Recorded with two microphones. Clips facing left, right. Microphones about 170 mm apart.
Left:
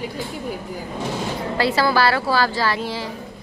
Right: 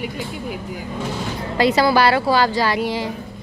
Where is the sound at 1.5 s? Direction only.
20° right (ahead or behind).